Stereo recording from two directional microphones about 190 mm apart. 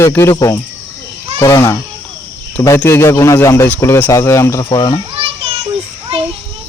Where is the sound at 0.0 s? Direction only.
15° left (ahead or behind).